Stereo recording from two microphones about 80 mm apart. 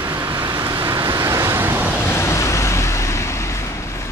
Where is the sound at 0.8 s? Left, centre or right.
Right.